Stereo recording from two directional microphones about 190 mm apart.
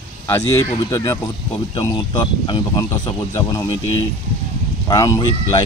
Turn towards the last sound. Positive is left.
turn(degrees=20)  # may be behind; listen again after turning